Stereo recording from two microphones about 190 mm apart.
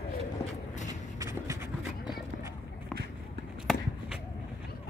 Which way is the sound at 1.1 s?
15° right (ahead or behind).